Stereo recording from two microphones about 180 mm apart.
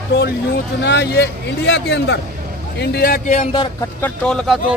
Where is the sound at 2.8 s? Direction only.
55° left (ahead or behind).